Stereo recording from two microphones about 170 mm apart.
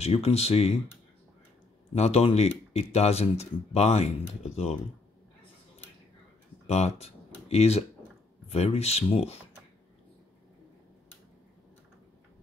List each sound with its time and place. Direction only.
0.0 s speech: 35° left (ahead or behind)
2.0 s speech: 40° left (ahead or behind)
6.7 s speech: 40° left (ahead or behind)